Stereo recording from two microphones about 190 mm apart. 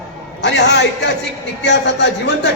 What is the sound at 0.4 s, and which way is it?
A man's voice, 65° left (ahead or behind).